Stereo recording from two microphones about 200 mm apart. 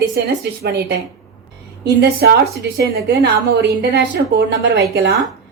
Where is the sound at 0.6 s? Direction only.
55° right (ahead or behind).